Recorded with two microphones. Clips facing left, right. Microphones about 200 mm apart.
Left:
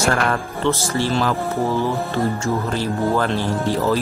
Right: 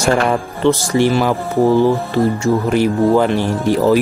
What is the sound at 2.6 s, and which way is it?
Speech, 15° right (ahead or behind).